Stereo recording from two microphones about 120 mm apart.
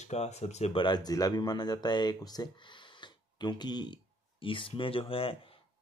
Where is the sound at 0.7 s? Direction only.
40° left (ahead or behind).